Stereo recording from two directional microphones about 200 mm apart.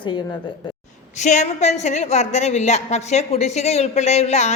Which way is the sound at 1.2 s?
35° left (ahead or behind).